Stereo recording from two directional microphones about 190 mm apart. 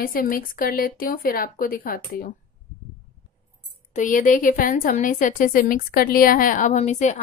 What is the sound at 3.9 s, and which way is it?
A woman's voice, 40° left (ahead or behind).